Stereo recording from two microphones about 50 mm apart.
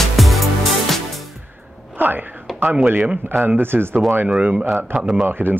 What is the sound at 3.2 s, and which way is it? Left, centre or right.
Speech, right.